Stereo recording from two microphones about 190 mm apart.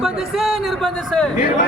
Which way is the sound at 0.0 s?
Centre (ahead or behind).